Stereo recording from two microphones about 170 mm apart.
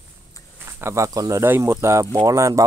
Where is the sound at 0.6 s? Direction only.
15° right (ahead or behind).